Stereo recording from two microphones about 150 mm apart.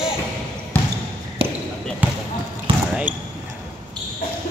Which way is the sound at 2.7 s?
40° right (ahead or behind).